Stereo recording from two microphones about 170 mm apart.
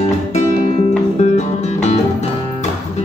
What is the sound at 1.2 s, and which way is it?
Music, 40° left (ahead or behind).